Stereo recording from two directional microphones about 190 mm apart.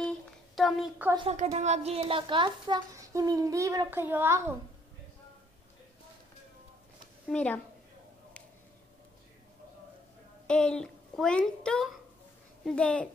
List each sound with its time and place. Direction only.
0.6 s a woman's voice: centre (ahead or behind)
1.3 s speech: 35° right (ahead or behind); by 4.6 s 10° right (ahead or behind)
7.2 s a woman's voice: 5° left (ahead or behind)
10.4 s a child's voice: 5° left (ahead or behind)